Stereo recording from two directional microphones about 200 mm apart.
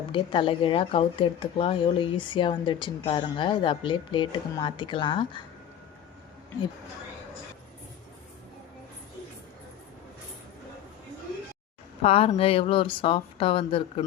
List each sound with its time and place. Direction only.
0.1 s speech: 25° left (ahead or behind)
12.0 s speech: 30° left (ahead or behind)